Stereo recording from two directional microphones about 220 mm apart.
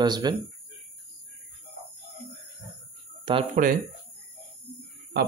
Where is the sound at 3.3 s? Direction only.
20° right (ahead or behind).